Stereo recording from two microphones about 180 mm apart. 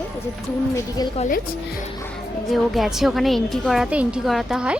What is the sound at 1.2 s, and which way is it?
Speech, 50° left (ahead or behind).